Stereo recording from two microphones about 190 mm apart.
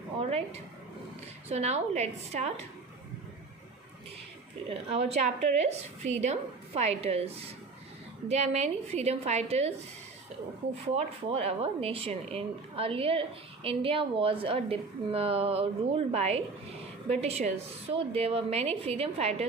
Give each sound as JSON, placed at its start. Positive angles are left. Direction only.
{"t": 0.2, "sound": "a woman's voice", "side_deg": -30}
{"t": 4.7, "sound": "speech", "side_deg": -30}
{"t": 10.9, "sound": "speech", "side_deg": -30}